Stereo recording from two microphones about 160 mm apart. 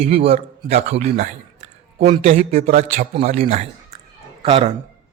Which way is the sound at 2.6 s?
65° right (ahead or behind).